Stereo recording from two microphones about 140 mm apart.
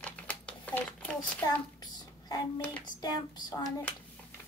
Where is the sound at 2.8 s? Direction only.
30° left (ahead or behind).